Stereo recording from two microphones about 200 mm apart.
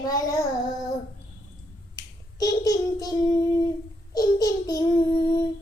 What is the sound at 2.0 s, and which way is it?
Finger snapping, 15° left (ahead or behind).